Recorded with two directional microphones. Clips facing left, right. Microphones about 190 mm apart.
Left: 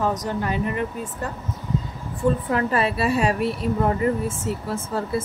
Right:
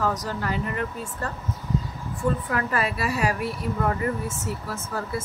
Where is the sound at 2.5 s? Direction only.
30° left (ahead or behind).